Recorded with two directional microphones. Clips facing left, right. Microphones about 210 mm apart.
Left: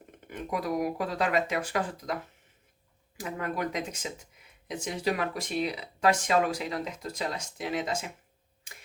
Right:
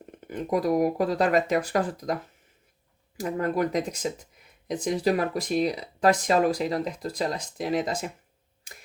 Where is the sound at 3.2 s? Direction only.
40° right (ahead or behind).